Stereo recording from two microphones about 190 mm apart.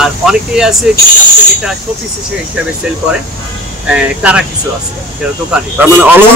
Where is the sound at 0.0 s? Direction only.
5° right (ahead or behind).